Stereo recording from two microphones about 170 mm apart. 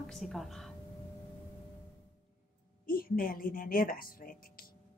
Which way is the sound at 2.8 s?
60° left (ahead or behind).